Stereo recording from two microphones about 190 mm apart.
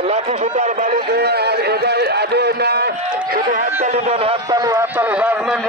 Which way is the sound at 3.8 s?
35° right (ahead or behind).